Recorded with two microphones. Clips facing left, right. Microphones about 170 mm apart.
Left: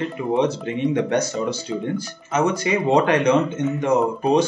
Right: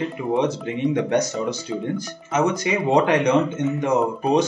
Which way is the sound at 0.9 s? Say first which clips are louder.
Right 1 dB; 15° right (ahead or behind).